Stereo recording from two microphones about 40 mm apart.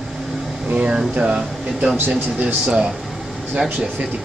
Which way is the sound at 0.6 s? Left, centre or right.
Right.